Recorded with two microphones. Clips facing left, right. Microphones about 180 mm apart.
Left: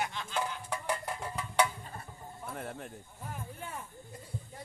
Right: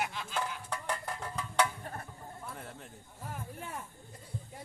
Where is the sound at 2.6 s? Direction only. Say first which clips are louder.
Left 6 dB; 60° left (ahead or behind).